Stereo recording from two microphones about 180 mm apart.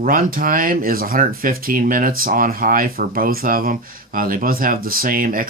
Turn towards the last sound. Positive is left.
turn(degrees=-50)  # may be behind; listen again after turning